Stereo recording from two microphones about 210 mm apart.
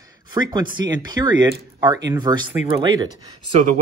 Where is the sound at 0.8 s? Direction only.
60° right (ahead or behind).